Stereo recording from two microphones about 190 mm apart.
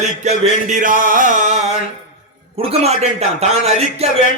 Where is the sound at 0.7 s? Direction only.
45° right (ahead or behind).